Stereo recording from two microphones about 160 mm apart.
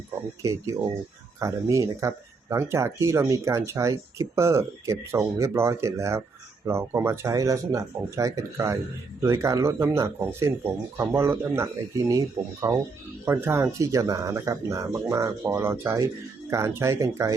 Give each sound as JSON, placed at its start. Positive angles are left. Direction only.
{"t": 0.4, "sound": "speech", "side_deg": -20}